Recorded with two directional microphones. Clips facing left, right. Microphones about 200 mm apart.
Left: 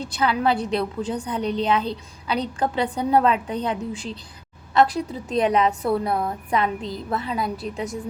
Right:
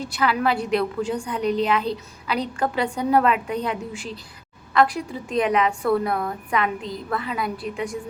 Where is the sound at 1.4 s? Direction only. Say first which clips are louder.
Right 1 dB; 5° right (ahead or behind).